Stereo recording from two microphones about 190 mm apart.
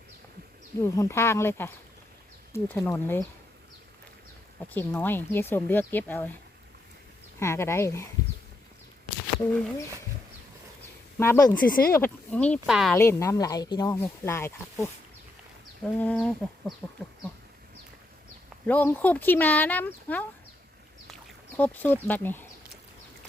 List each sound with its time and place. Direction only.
0.8 s speech: 15° left (ahead or behind)
4.7 s speech: 10° left (ahead or behind)
7.3 s speech: 15° left (ahead or behind)
11.2 s speech: 15° left (ahead or behind)
11.5 s speech: 50° left (ahead or behind)
11.9 s speech: 10° left (ahead or behind)
13.0 s speech: 15° left (ahead or behind)
15.8 s chicken: 5° left (ahead or behind)
18.6 s speech: 10° left (ahead or behind)